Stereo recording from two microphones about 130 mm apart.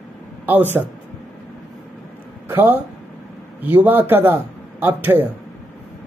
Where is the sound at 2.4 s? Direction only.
15° right (ahead or behind).